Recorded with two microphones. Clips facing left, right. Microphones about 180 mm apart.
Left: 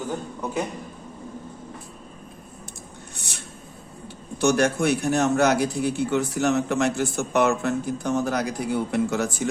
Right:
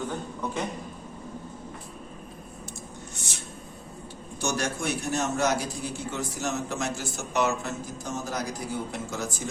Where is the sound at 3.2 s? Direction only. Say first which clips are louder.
Even; 60° left (ahead or behind).